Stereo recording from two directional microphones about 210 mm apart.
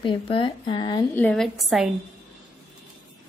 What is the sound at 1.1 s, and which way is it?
Speech, 5° left (ahead or behind).